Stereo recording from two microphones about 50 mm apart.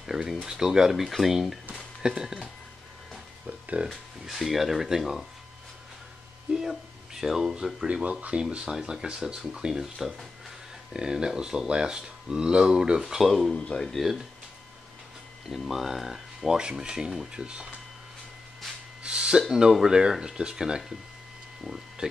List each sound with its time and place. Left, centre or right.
0.0 s speech: centre
1.7 s music: centre
3.4 s speech: right
3.9 s speech: centre
6.5 s speech: centre
8.6 s speech: centre
9.9 s speech: centre
10.9 s speech: centre
13.3 s speech: centre
15.4 s speech: centre
19.0 s a sound: centre
19.5 s speech: centre
22.0 s a sound: centre